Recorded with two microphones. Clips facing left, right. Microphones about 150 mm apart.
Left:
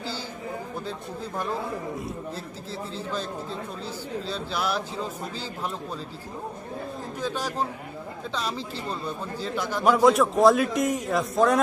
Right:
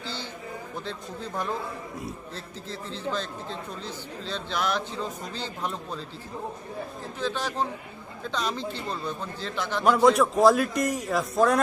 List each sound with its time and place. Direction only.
0.9 s speech: 10° left (ahead or behind)
3.8 s speech: 5° left (ahead or behind)
7.2 s a man's voice: 10° left (ahead or behind)